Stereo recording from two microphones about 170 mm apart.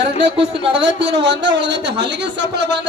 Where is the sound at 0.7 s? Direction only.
90° right.